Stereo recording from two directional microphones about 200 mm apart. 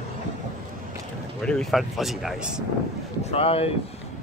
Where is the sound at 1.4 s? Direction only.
Centre (ahead or behind).